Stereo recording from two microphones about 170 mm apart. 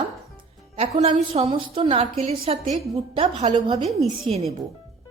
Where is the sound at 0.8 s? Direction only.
35° right (ahead or behind).